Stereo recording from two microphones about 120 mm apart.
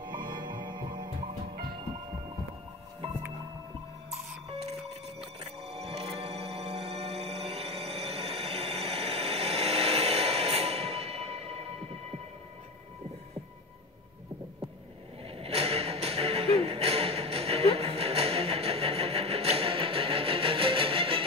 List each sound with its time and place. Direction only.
0.0 s music: 40° right (ahead or behind)
5.6 s music: 55° right (ahead or behind)
15.3 s music: 55° right (ahead or behind)